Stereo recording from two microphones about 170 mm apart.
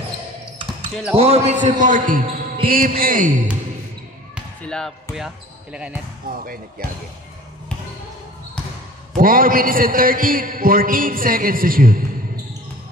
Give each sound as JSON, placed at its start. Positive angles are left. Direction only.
{"t": 1.1, "sound": "a man's voice", "side_deg": -40}
{"t": 4.6, "sound": "speech", "side_deg": 5}
{"t": 6.2, "sound": "a man's voice", "side_deg": -55}
{"t": 8.6, "sound": "basketball bounce", "side_deg": 5}
{"t": 9.1, "sound": "a man's voice", "side_deg": -55}